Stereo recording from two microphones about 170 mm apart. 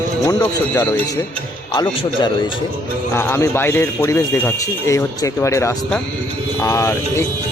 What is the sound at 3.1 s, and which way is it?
Speech, 15° left (ahead or behind).